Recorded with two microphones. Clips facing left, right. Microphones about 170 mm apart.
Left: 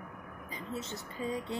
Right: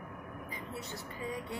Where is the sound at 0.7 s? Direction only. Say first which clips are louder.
Left 6 dB; 25° left (ahead or behind).